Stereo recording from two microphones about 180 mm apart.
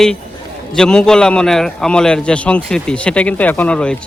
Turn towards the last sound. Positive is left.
turn(degrees=5)  # may be behind; listen again after turning